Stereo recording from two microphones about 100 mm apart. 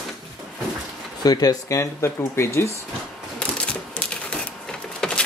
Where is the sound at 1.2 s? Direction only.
40° left (ahead or behind).